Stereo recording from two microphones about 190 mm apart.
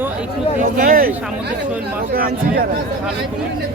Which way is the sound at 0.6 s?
45° right (ahead or behind).